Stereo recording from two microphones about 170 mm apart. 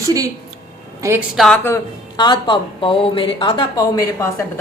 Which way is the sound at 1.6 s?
20° left (ahead or behind).